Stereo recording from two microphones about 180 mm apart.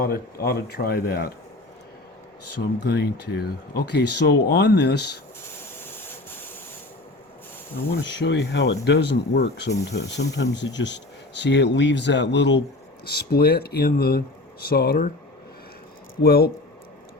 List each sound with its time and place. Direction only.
0.0 s speech: 55° left (ahead or behind)
2.6 s speech: 65° left (ahead or behind)
5.5 s vehicle: 10° left (ahead or behind)
7.9 s speech: 80° left
13.1 s speech: 60° left (ahead or behind)
16.2 s speech: 60° left (ahead or behind)